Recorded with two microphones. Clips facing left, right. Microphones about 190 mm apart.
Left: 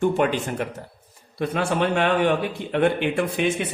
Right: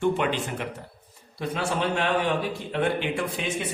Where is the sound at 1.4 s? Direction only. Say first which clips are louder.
Left 5 dB; 60° left (ahead or behind).